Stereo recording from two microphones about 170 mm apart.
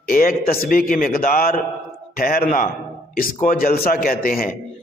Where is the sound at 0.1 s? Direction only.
60° left (ahead or behind).